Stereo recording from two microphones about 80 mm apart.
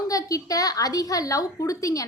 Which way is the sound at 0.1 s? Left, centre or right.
Left.